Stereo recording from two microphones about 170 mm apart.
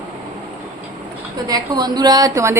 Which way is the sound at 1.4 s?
20° right (ahead or behind).